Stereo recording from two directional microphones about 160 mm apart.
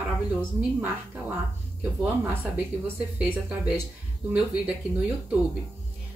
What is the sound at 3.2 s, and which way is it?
Speech, 5° right (ahead or behind).